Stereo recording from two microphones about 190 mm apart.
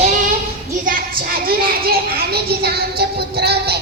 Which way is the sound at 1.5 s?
50° right (ahead or behind).